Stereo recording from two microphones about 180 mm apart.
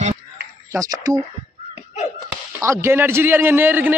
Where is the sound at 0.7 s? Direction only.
20° right (ahead or behind).